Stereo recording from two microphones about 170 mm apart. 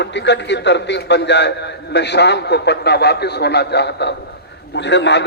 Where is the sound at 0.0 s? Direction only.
90° left.